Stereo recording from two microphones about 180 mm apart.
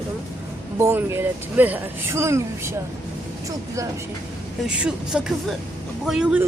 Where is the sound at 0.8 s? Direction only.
15° right (ahead or behind).